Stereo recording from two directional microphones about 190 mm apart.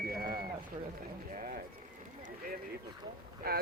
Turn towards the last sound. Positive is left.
turn(degrees=-55)  # may be behind; listen again after turning